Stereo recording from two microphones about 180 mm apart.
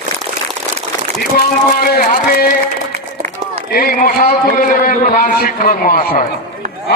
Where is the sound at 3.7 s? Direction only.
55° left (ahead or behind).